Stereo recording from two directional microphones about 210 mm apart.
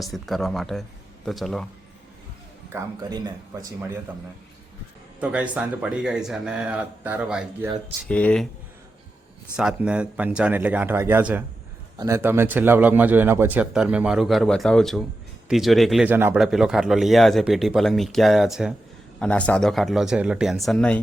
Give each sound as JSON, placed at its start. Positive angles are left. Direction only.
{"t": 0.0, "sound": "speech", "side_deg": 0}
{"t": 3.0, "sound": "a man's voice", "side_deg": -20}
{"t": 5.2, "sound": "speech", "side_deg": -5}
{"t": 8.0, "sound": "speech", "side_deg": 5}
{"t": 9.6, "sound": "a man's voice", "side_deg": -5}